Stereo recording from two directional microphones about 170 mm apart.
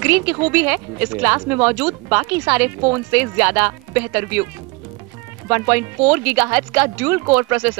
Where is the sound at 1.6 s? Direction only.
10° right (ahead or behind).